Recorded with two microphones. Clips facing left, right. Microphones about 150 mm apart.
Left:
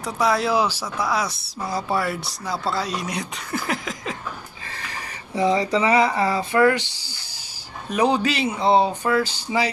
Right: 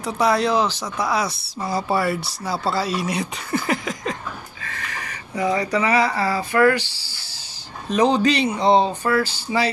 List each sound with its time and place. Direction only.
0.0 s speech: centre (ahead or behind)
4.6 s speech: 30° left (ahead or behind)
7.9 s speech: 10° left (ahead or behind)